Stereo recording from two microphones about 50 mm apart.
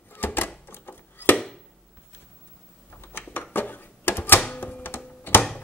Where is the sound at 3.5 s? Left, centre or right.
Left.